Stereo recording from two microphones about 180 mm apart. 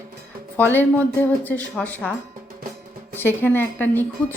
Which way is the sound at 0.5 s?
10° left (ahead or behind).